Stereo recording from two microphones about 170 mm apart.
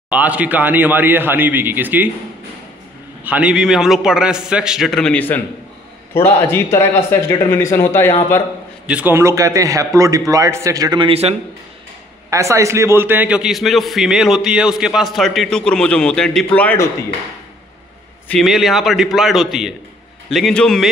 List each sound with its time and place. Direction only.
0.1 s a man's voice: 10° right (ahead or behind)
3.3 s a man's voice: 5° right (ahead or behind); by 8.1 s 15° left (ahead or behind)
8.8 s a man's voice: 10° right (ahead or behind); by 11.3 s 35° right (ahead or behind)
12.3 s a man's voice: 15° right (ahead or behind); by 16.9 s 10° left (ahead or behind)
18.3 s a man's voice: centre (ahead or behind)